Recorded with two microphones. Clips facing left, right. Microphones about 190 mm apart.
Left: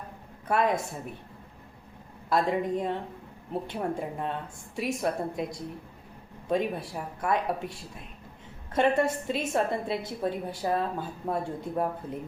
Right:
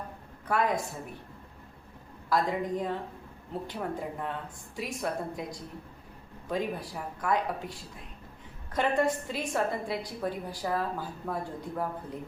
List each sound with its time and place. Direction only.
0.4 s a woman's voice: 25° left (ahead or behind)
2.3 s a woman's voice: 25° left (ahead or behind)